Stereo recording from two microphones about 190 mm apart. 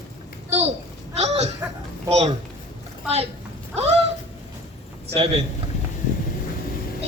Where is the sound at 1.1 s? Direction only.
35° right (ahead or behind).